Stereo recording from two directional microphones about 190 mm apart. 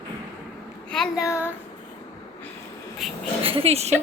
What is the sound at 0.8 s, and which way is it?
Child singing, centre (ahead or behind).